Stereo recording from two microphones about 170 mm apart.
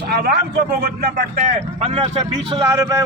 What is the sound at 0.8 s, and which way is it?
Speech, 55° right (ahead or behind).